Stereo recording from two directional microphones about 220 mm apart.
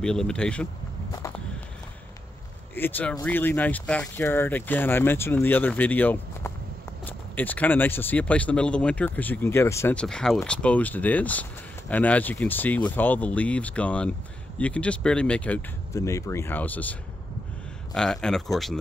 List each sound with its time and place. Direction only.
0.0 s speech: 5° left (ahead or behind)
2.7 s speech: 10° left (ahead or behind)
17.9 s speech: centre (ahead or behind)